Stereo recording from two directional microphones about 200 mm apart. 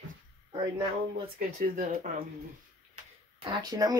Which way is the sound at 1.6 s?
40° right (ahead or behind).